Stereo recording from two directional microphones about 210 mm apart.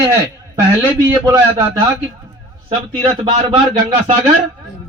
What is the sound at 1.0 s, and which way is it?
Speech, 15° right (ahead or behind).